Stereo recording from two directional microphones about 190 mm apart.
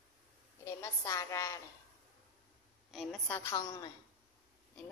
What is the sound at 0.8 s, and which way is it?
Speech, 15° left (ahead or behind).